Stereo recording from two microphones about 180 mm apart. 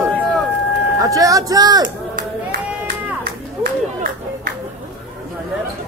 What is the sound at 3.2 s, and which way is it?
Run, 55° right (ahead or behind).